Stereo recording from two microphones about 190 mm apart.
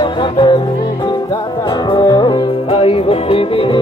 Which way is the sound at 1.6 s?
25° left (ahead or behind).